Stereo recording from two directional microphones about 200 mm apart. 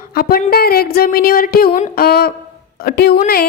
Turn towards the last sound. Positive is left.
turn(degrees=50)  # may be behind; listen again after turning